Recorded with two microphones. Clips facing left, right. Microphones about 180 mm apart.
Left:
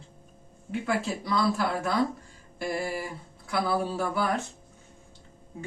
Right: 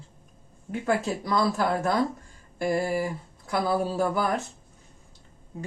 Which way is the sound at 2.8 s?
45° right (ahead or behind).